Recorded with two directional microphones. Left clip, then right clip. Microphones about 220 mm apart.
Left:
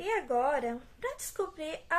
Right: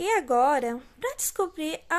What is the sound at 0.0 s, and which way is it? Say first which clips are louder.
A woman's voice: right 7 dB; 55° right (ahead or behind).